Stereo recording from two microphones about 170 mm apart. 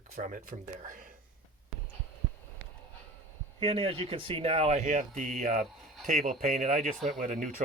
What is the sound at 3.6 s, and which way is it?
Speech, 35° right (ahead or behind).